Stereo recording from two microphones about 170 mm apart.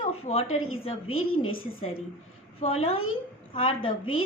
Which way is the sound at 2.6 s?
35° left (ahead or behind).